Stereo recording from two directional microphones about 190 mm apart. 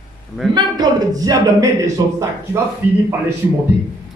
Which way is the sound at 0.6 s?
20° right (ahead or behind).